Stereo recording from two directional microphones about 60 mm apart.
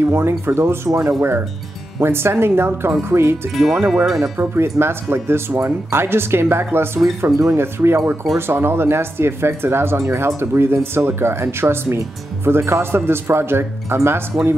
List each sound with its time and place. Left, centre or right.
0.1 s speech: right
0.8 s speech: right
2.0 s speech: right
3.5 s speech: centre
4.4 s speech: right